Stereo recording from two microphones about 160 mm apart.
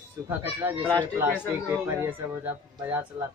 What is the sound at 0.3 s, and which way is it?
Speech, 15° right (ahead or behind).